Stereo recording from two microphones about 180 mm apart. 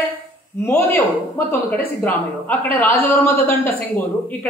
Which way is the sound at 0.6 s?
10° left (ahead or behind).